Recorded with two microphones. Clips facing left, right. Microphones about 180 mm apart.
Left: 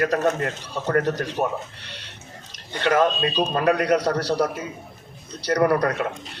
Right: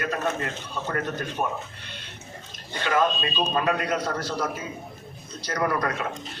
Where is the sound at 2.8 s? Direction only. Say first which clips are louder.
Left 4 dB; 75° left (ahead or behind).